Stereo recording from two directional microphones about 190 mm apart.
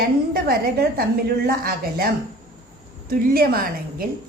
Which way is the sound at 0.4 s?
55° right (ahead or behind).